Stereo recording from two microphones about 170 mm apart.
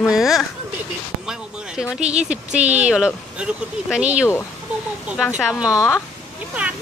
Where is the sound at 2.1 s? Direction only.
5° right (ahead or behind).